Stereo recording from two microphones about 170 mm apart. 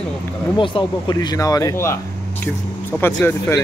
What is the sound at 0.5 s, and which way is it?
A man's voice, 30° left (ahead or behind).